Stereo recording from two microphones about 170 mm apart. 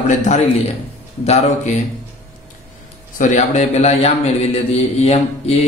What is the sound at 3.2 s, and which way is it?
Speech, 45° left (ahead or behind).